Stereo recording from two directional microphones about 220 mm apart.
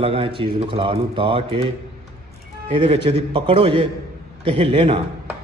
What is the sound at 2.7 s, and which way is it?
Speech, 25° right (ahead or behind).